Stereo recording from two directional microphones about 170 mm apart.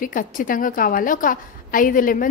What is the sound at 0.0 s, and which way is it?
A woman's voice, 55° left (ahead or behind).